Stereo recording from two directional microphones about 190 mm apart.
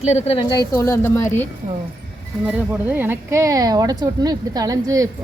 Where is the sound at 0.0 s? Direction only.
35° left (ahead or behind); by 1.5 s 10° left (ahead or behind).